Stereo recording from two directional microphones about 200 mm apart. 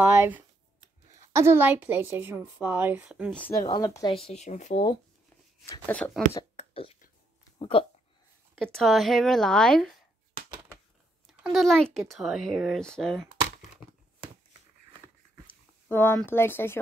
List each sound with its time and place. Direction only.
0.0 s a woman's voice: 10° right (ahead or behind)
3.3 s speech: 10° left (ahead or behind)
4.3 s speech: 35° left (ahead or behind)
5.9 s speech: 10° left (ahead or behind)
6.5 s a sound: 30° left (ahead or behind)
7.5 s speech: 25° left (ahead or behind)
8.5 s speech: centre (ahead or behind)
10.5 s a sound: 10° right (ahead or behind)
11.2 s speech: centre (ahead or behind)
15.9 s speech: 10° left (ahead or behind)